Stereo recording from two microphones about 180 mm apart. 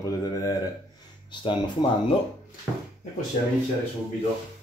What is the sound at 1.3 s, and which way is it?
Speech, 25° left (ahead or behind).